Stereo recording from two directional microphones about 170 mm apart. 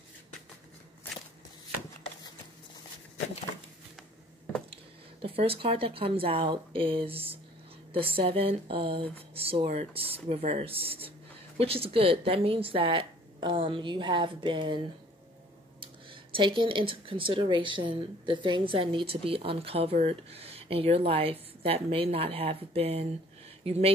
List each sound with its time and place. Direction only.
5.2 s speech: 35° right (ahead or behind)
15.8 s speech: 30° right (ahead or behind)